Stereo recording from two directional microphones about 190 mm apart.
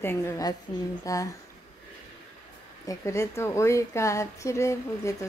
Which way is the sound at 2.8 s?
15° left (ahead or behind).